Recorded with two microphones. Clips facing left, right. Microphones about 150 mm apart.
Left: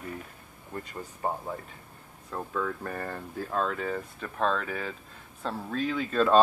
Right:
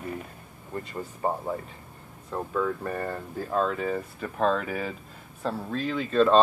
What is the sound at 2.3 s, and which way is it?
Speech, 10° right (ahead or behind).